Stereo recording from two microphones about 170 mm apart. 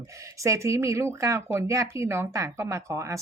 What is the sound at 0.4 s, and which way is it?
Speech, 15° right (ahead or behind).